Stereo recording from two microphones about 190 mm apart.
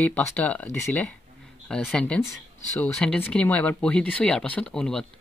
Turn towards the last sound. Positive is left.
turn(degrees=5)  # may be behind; listen again after turning